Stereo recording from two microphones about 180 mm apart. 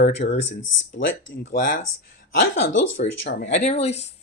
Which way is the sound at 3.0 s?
50° left (ahead or behind).